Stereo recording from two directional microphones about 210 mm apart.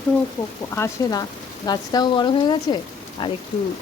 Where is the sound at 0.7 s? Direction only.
15° left (ahead or behind).